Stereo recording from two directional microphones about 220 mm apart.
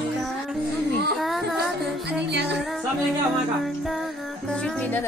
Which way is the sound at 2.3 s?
50° right (ahead or behind).